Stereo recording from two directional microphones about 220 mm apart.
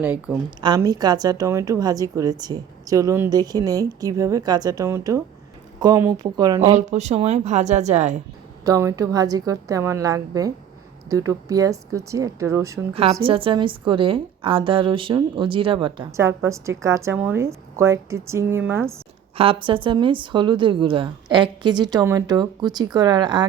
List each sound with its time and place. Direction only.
0.0 s a woman's voice: 10° right (ahead or behind)
0.6 s a woman's voice: 20° right (ahead or behind)
6.6 s a woman's voice: 30° right (ahead or behind)
8.6 s a woman's voice: 15° right (ahead or behind)
12.9 s a woman's voice: 25° right (ahead or behind); by 18.9 s 10° right (ahead or behind)
19.4 s a woman's voice: 25° right (ahead or behind)